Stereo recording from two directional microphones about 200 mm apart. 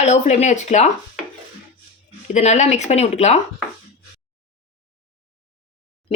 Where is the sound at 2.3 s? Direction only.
35° left (ahead or behind).